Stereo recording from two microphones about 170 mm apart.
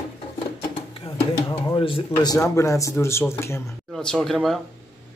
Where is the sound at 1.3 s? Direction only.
25° left (ahead or behind).